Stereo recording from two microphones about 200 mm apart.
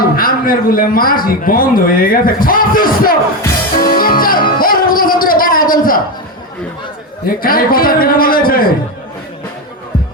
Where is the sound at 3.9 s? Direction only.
45° left (ahead or behind).